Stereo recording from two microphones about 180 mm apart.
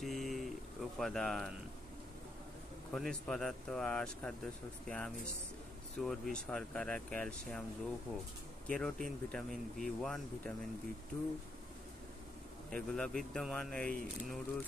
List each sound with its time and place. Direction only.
0.0 s a sound: centre (ahead or behind)
0.9 s speech: centre (ahead or behind)
2.9 s speech: 5° left (ahead or behind)
12.7 s speech: 5° left (ahead or behind)